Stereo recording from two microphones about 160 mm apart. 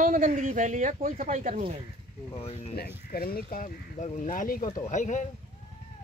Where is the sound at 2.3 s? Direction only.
40° left (ahead or behind).